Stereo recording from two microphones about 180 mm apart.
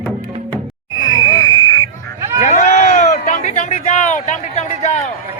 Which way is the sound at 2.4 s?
40° left (ahead or behind).